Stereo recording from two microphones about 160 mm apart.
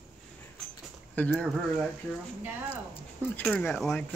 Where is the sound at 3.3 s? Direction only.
10° left (ahead or behind).